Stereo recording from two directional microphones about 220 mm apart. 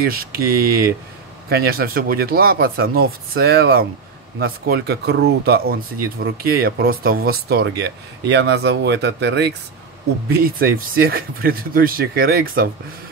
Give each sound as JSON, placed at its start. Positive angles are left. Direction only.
{"t": 0.0, "sound": "speech", "side_deg": -40}